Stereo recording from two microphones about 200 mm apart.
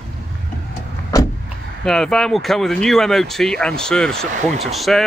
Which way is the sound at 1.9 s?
5° left (ahead or behind).